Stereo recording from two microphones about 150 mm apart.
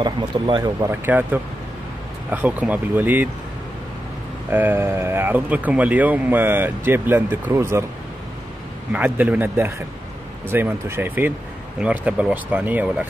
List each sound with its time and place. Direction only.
0.0 s speech: 30° right (ahead or behind)
1.0 s speech: 15° right (ahead or behind)
4.5 s speech: 15° right (ahead or behind)
8.9 s speech: 10° right (ahead or behind)